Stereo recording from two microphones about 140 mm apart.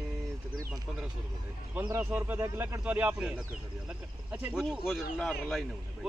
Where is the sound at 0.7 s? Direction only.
Centre (ahead or behind).